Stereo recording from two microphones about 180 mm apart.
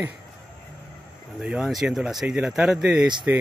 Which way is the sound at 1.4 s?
5° right (ahead or behind).